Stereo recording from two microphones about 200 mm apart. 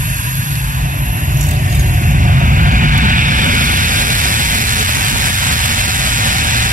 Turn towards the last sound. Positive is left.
turn(degrees=-40)  # may be behind; listen again after turning